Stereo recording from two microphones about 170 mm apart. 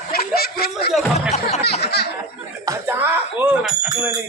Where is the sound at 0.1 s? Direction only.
65° left (ahead or behind).